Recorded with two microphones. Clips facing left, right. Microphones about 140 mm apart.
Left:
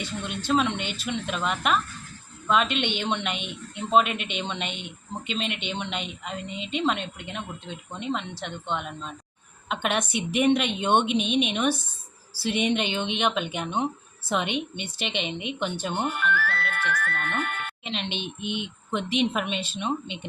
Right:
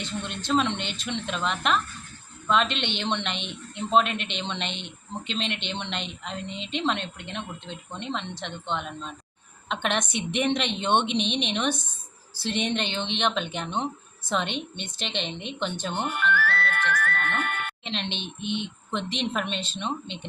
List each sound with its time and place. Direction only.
0.0 s a woman's voice: 10° left (ahead or behind)
16.3 s speech: 75° right (ahead or behind)
17.8 s a woman's voice: 10° left (ahead or behind)